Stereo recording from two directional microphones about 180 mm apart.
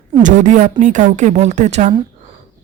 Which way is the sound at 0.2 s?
45° right (ahead or behind).